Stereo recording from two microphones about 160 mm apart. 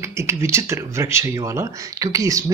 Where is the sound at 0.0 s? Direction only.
15° right (ahead or behind).